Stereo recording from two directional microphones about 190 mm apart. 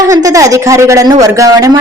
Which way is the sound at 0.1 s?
15° right (ahead or behind).